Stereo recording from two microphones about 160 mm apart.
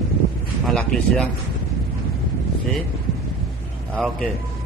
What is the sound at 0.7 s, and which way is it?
Speech, 5° left (ahead or behind).